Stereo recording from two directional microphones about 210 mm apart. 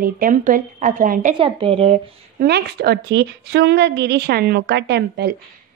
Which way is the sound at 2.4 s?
50° right (ahead or behind).